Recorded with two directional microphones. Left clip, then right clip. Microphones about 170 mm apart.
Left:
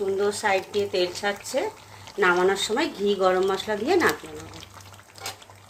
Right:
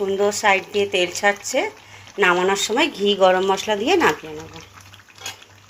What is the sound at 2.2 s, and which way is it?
Speech, 40° right (ahead or behind).